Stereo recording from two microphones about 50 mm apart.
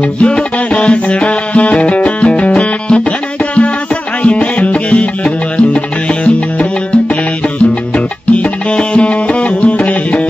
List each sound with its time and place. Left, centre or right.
0.0 s music: left
4.2 s music: left